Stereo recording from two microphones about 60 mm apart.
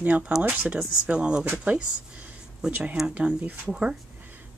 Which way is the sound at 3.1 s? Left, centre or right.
Right.